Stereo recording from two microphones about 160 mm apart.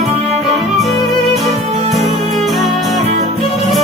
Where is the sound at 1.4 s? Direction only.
Centre (ahead or behind).